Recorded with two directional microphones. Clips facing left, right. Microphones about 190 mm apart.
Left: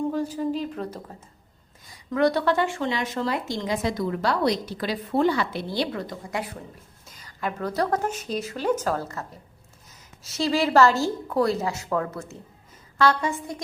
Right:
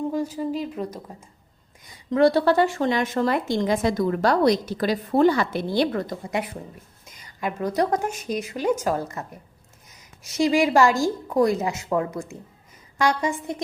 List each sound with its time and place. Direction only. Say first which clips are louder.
0.3 s a woman's voice: even; 10° right (ahead or behind)
2.0 s a woman's voice: right 4 dB; 30° right (ahead or behind); by 6.1 s 50° right (ahead or behind)
7.4 s a woman's voice: right 3 dB; 15° right (ahead or behind)
10.2 s a woman's voice: right 4 dB; 15° right (ahead or behind)